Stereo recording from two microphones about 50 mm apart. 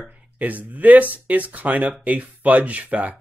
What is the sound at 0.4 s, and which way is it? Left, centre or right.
Speech, right.